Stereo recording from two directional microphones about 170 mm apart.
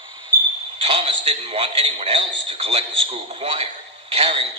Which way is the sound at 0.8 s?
35° right (ahead or behind).